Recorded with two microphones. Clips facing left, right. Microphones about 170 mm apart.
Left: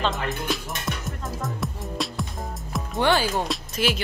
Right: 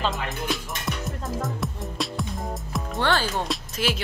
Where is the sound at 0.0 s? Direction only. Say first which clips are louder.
Left 1 dB; centre (ahead or behind).